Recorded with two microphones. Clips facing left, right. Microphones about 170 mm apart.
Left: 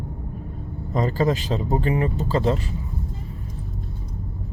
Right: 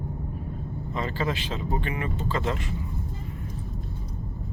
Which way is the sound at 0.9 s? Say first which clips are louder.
Left 8 dB; 40° left (ahead or behind).